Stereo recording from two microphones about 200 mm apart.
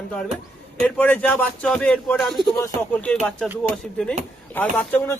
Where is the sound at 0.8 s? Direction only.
10° left (ahead or behind).